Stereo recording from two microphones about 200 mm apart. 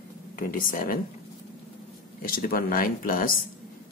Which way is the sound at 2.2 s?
45° left (ahead or behind).